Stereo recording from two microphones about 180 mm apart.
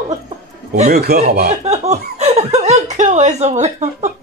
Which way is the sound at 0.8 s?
60° right (ahead or behind).